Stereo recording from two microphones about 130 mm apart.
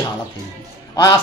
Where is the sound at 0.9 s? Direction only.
35° left (ahead or behind).